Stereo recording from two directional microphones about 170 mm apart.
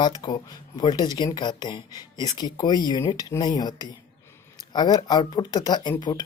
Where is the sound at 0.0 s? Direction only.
25° left (ahead or behind).